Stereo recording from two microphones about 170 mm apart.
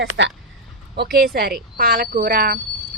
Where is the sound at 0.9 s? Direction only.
70° right (ahead or behind).